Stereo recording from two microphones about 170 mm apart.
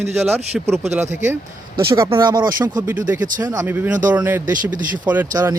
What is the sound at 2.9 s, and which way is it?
A man's voice, 10° right (ahead or behind).